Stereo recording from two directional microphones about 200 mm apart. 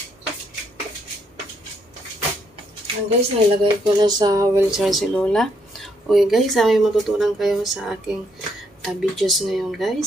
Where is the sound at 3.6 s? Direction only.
20° right (ahead or behind).